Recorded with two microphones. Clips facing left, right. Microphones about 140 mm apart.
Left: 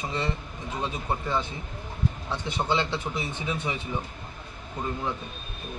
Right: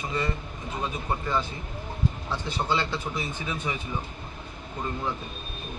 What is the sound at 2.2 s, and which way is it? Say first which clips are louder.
A man's voice: left 2 dB; 20° left (ahead or behind).